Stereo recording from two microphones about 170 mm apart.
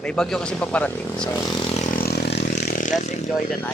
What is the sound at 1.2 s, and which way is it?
Speech, 25° left (ahead or behind).